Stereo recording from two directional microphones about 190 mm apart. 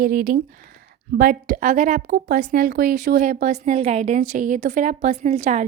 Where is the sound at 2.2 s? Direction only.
55° right (ahead or behind).